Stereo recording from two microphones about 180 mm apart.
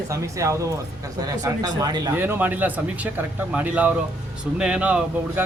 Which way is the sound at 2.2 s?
10° right (ahead or behind).